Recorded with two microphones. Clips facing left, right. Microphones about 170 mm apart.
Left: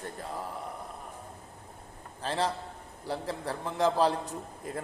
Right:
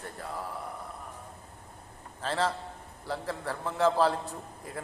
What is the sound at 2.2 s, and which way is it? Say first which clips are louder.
A man's voice: right 1 dB; 15° left (ahead or behind).